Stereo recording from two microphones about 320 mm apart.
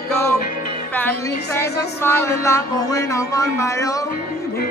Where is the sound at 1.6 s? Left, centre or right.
Centre.